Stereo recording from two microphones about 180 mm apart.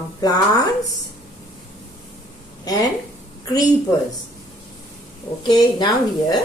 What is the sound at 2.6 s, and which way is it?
Speech, 20° left (ahead or behind).